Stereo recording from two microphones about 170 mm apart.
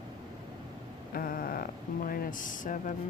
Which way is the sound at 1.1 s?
55° left (ahead or behind).